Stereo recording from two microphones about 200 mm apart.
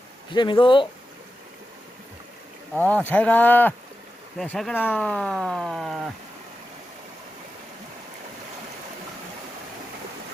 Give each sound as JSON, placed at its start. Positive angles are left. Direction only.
{"t": 0.3, "sound": "speech", "side_deg": 25}
{"t": 2.9, "sound": "speech", "side_deg": 10}